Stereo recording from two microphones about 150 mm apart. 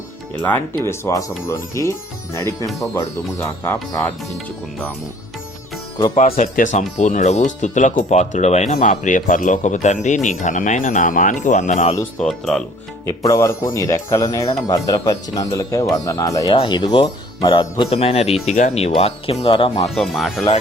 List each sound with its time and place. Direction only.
0.4 s speech: 15° left (ahead or behind)
6.2 s speech: 65° left (ahead or behind)
12.2 s speech: 5° left (ahead or behind)
13.1 s speech: 20° left (ahead or behind)
20.0 s speech: centre (ahead or behind)